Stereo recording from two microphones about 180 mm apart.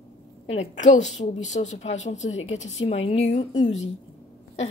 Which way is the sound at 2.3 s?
90° left.